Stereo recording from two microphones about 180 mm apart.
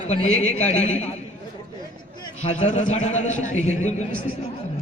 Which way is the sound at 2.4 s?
40° left (ahead or behind).